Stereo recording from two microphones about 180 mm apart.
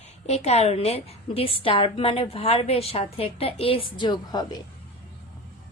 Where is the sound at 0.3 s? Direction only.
35° left (ahead or behind).